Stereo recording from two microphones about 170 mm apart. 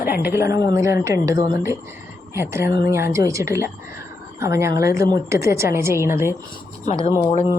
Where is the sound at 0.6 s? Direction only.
20° right (ahead or behind).